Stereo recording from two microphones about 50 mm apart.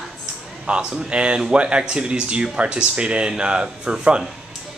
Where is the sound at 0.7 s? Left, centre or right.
Right.